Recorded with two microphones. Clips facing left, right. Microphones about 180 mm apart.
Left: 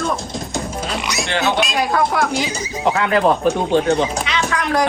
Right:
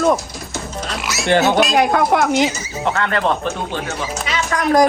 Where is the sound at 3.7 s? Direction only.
60° left (ahead or behind).